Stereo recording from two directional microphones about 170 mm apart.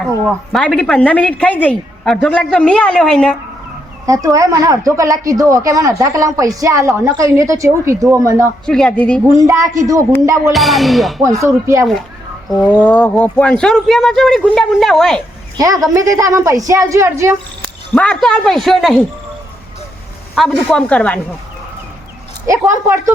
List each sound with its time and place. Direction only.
0.3 s a woman's voice: centre (ahead or behind)
4.0 s speech: 20° right (ahead or behind)
8.6 s a woman's voice: 5° left (ahead or behind)
9.2 s speech: 20° right (ahead or behind)
10.5 s a woman's voice: centre (ahead or behind)
11.2 s speech: 20° right (ahead or behind)
12.8 s a woman's voice: 10° left (ahead or behind)
15.5 s speech: 20° right (ahead or behind)
17.9 s a woman's voice: 5° left (ahead or behind)
20.3 s a woman's voice: centre (ahead or behind)
22.4 s speech: 20° right (ahead or behind)